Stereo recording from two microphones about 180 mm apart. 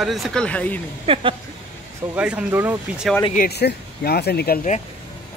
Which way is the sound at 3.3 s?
55° left (ahead or behind).